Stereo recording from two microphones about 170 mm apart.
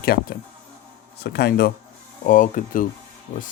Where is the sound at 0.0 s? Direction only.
65° left (ahead or behind).